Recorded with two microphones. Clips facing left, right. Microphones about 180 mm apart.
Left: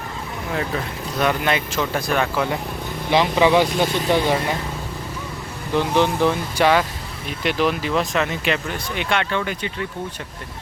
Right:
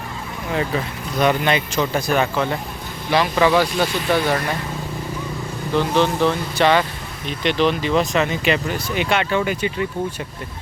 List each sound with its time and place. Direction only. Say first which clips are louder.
1.2 s speech: right 3 dB; centre (ahead or behind)
3.1 s speech: even; 20° left (ahead or behind)
5.7 s speech: even; 15° left (ahead or behind); by 9.6 s 10° right (ahead or behind)